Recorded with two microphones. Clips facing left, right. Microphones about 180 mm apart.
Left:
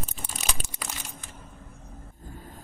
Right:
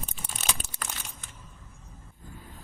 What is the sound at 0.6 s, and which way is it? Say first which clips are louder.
Crumpling: left 1 dB; 15° left (ahead or behind).